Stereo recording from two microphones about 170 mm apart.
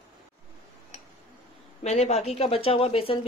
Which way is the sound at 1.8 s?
40° left (ahead or behind).